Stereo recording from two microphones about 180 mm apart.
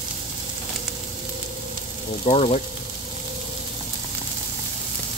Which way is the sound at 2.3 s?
35° left (ahead or behind).